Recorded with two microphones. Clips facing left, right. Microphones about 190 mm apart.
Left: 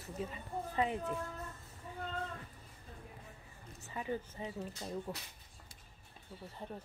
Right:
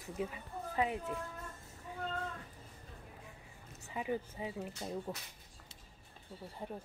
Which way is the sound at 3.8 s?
15° right (ahead or behind).